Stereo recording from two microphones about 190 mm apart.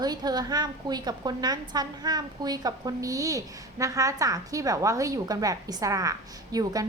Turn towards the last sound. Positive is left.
turn(degrees=-20)  # may be behind; listen again after turning